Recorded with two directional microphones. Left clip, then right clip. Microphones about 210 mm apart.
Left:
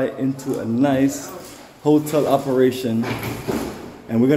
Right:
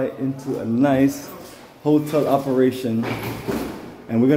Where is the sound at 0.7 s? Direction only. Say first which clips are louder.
Right 1 dB; 10° right (ahead or behind).